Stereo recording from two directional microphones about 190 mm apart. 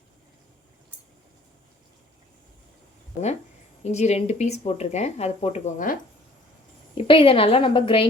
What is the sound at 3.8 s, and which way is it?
Speech, 35° left (ahead or behind).